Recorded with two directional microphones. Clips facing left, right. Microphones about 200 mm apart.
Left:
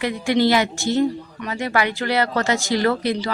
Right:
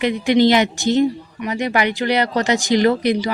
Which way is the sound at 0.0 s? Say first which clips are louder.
Right 4 dB; 20° right (ahead or behind).